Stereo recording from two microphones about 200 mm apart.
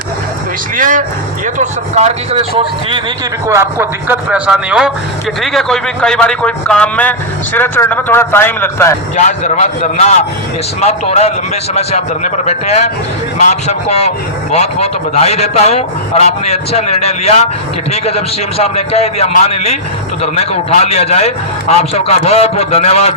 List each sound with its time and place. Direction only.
0.8 s speech: 40° right (ahead or behind)
3.4 s speech: 15° right (ahead or behind); by 9.0 s 10° left (ahead or behind)
9.1 s a man's voice: 35° left (ahead or behind)